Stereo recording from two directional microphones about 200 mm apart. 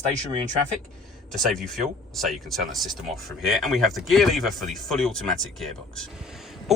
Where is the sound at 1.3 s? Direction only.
Centre (ahead or behind).